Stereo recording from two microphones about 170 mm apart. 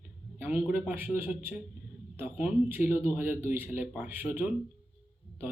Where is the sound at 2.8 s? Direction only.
40° left (ahead or behind).